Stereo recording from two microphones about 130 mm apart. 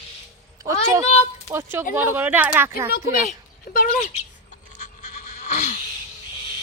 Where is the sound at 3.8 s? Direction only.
65° left (ahead or behind).